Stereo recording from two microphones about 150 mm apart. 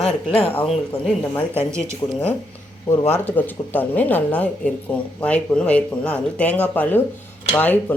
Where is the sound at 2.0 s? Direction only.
20° left (ahead or behind).